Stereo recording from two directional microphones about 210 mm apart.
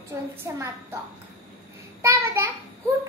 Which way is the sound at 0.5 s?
15° right (ahead or behind).